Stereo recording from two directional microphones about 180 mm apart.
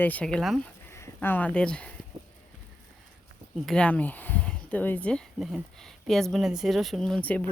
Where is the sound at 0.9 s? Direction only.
15° left (ahead or behind).